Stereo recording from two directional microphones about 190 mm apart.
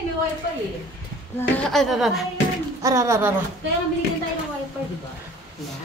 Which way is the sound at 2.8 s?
15° right (ahead or behind).